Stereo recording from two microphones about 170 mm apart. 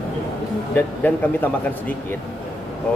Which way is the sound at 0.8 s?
10° left (ahead or behind).